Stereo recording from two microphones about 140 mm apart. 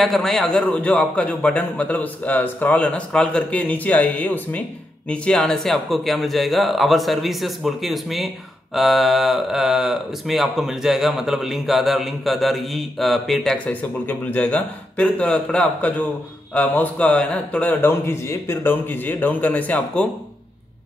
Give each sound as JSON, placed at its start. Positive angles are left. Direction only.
{"t": 0.0, "sound": "a man's voice", "side_deg": 0}